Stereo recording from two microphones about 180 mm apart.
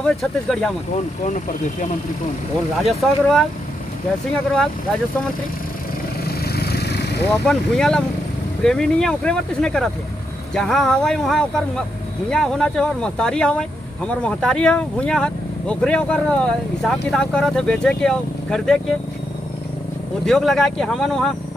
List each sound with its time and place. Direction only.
0.0 s speech: centre (ahead or behind)
1.2 s speech: 45° left (ahead or behind)
2.8 s speech: centre (ahead or behind)
6.4 s vehicle: 60° left (ahead or behind)
7.4 s speech: 5° left (ahead or behind)
20.2 s speech: centre (ahead or behind)